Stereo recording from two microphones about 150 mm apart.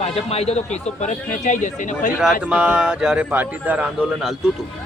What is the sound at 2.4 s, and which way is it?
A man's voice, 5° right (ahead or behind).